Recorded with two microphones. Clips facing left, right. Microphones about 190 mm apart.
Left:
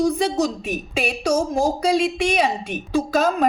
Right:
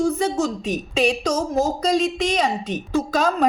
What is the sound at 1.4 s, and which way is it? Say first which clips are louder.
Speech: left 1 dB; 30° left (ahead or behind).